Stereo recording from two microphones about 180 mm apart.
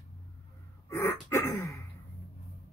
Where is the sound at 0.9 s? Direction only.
15° left (ahead or behind).